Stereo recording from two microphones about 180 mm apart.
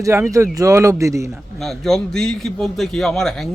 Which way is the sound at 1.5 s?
Centre (ahead or behind).